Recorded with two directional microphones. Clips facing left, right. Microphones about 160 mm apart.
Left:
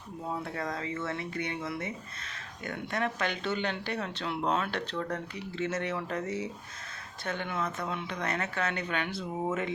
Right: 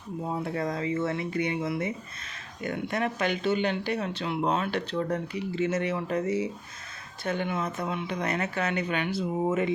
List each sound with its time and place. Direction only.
0.3 s speech: 20° right (ahead or behind)